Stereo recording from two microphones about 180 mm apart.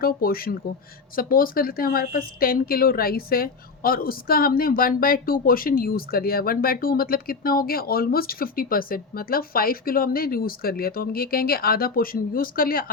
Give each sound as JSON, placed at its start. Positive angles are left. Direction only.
{"t": 0.0, "sound": "speech", "side_deg": 55}